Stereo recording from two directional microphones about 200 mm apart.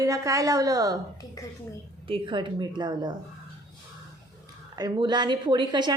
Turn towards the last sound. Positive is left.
turn(degrees=-20)  # may be behind; listen again after turning